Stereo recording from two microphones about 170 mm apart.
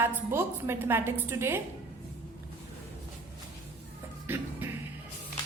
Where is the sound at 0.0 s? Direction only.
15° right (ahead or behind).